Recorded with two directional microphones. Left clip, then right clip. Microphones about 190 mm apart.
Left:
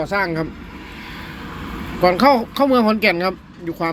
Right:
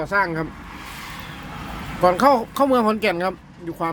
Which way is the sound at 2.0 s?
10° right (ahead or behind).